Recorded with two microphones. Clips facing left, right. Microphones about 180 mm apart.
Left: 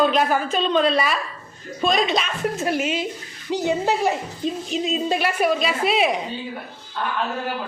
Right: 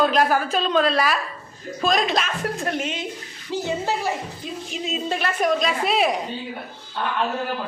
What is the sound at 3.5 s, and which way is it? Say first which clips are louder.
A child's voice: left 3 dB; 15° left (ahead or behind).